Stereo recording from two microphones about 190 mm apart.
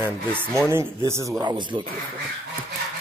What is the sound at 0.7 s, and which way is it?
Speech, 15° right (ahead or behind).